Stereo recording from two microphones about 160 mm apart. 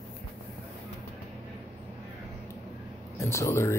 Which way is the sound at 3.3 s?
15° left (ahead or behind).